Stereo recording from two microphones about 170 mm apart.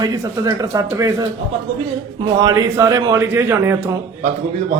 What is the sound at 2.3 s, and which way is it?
A man's voice, 20° right (ahead or behind).